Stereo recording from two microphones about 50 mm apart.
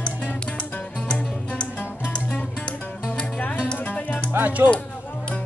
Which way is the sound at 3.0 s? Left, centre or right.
Left.